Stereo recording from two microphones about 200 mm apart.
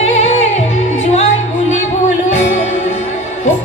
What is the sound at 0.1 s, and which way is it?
Music, 35° left (ahead or behind).